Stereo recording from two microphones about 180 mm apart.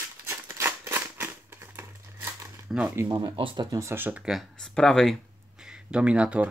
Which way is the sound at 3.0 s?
25° right (ahead or behind).